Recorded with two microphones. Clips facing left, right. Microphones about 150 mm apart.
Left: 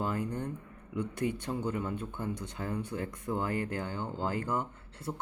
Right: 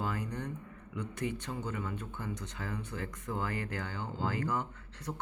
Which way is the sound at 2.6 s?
50° left (ahead or behind).